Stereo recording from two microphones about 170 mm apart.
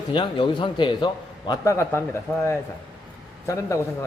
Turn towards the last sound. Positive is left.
turn(degrees=20)  # may be behind; listen again after turning